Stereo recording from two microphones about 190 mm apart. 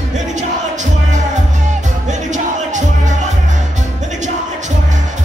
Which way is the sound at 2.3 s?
40° right (ahead or behind).